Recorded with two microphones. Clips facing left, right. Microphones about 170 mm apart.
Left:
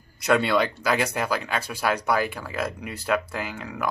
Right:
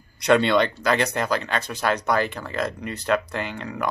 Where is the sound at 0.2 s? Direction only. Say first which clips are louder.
Right 3 dB; 5° left (ahead or behind).